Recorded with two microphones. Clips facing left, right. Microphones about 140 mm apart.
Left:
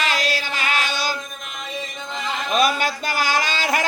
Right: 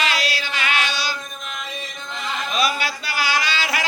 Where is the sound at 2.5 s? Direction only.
45° left (ahead or behind).